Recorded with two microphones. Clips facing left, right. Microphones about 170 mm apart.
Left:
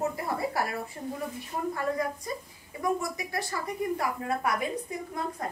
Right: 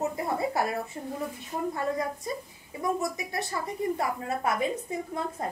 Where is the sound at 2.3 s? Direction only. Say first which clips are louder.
Right 2 dB; 25° right (ahead or behind).